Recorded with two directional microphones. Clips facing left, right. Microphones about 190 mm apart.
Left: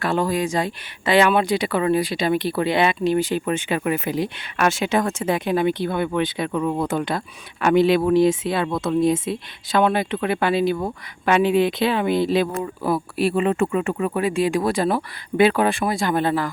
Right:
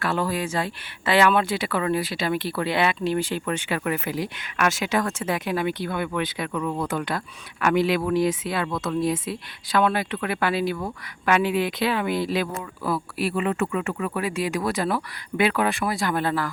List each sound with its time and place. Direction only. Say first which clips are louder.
0.0 s speech: left 4 dB; 20° left (ahead or behind)